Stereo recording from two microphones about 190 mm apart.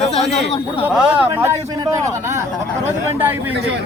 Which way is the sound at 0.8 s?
10° right (ahead or behind).